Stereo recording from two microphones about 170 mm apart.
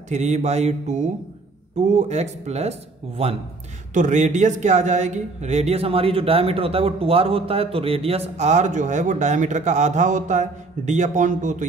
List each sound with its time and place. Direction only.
0.1 s speech: 40° right (ahead or behind)